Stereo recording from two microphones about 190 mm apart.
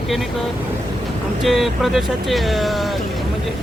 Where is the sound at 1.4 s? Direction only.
Centre (ahead or behind).